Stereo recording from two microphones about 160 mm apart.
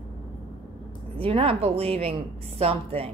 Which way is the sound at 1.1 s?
35° right (ahead or behind).